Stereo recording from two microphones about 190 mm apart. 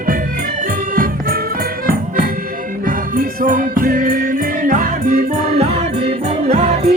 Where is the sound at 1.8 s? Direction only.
50° right (ahead or behind).